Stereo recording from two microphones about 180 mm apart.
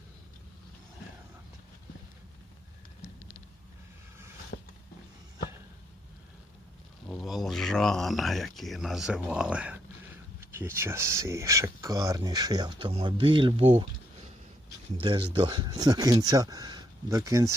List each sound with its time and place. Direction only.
4.5 s a sound: 55° left (ahead or behind)
7.1 s speech: centre (ahead or behind); by 13.7 s 30° right (ahead or behind)
15.0 s speech: 25° right (ahead or behind)